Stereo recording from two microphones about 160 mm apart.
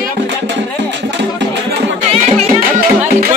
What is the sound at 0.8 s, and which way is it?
Speech, 90° right.